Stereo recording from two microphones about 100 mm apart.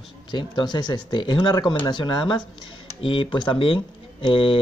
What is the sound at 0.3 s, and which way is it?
Speech, 50° left (ahead or behind).